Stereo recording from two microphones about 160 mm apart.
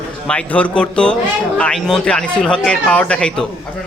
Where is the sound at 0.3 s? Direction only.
5° left (ahead or behind).